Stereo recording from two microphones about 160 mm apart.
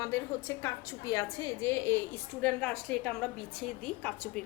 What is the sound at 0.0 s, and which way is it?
A woman's voice, 15° left (ahead or behind).